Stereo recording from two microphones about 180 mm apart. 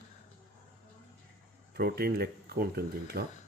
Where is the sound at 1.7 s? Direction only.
60° right (ahead or behind).